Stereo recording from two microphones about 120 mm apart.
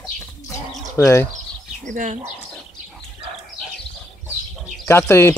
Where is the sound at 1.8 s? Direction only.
90° right.